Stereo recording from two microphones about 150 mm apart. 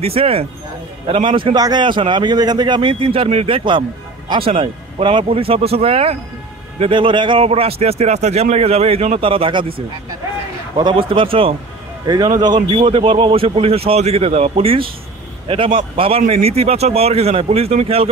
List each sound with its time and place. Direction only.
0.0 s speech: 40° right (ahead or behind)
12.1 s a man's voice: 25° right (ahead or behind)